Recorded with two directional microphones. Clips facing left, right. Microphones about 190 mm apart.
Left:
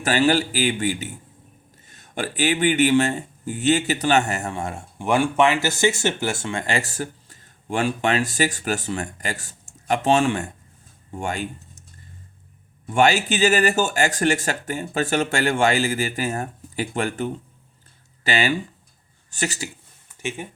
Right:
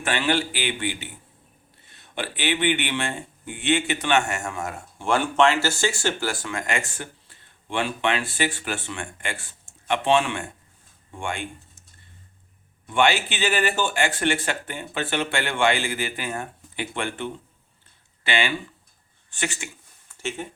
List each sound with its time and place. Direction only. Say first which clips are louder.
0.0 s speech: left 5 dB; 40° left (ahead or behind)
4.9 s speech: left 2 dB; 15° left (ahead or behind); by 11.8 s 40° left (ahead or behind)
12.9 s speech: left 3 dB; 40° left (ahead or behind)
20.1 s speech: left 1 dB; 15° left (ahead or behind)